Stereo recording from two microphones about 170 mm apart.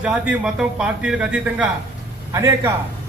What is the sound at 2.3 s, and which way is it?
Speech, 20° right (ahead or behind).